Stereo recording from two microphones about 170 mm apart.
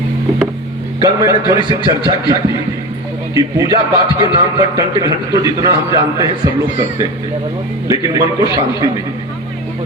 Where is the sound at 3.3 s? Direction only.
20° right (ahead or behind).